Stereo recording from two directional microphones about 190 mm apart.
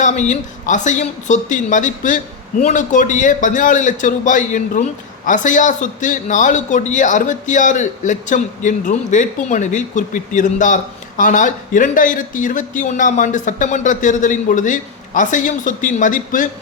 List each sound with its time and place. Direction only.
0.0 s a woman's voice: 40° left (ahead or behind)